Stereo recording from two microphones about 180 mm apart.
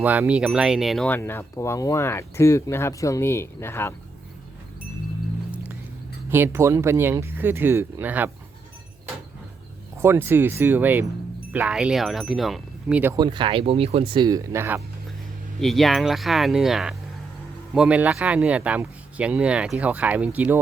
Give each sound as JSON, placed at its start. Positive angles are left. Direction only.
{"t": 0.0, "sound": "speech", "side_deg": -10}
{"t": 6.3, "sound": "speech", "side_deg": -15}
{"t": 10.0, "sound": "speech", "side_deg": -15}
{"t": 13.1, "sound": "speech", "side_deg": -25}
{"t": 15.6, "sound": "speech", "side_deg": 0}